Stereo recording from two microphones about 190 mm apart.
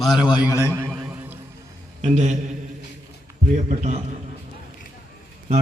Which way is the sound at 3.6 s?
35° right (ahead or behind).